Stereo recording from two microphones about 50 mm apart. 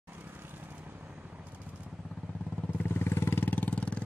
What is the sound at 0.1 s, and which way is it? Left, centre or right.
Vehicle, right.